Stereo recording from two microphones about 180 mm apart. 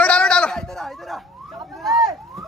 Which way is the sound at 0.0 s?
5° left (ahead or behind).